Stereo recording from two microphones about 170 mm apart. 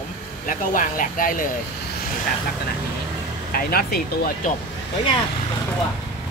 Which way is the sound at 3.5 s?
60° left (ahead or behind).